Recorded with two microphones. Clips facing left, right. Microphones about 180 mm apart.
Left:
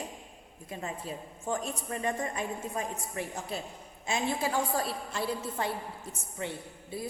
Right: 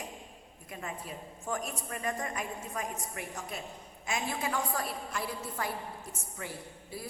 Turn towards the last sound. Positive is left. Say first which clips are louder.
# left 4 dB
turn(degrees=25)  # may be behind; listen again after turning